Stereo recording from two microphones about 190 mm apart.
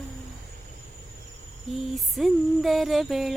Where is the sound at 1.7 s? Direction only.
Centre (ahead or behind).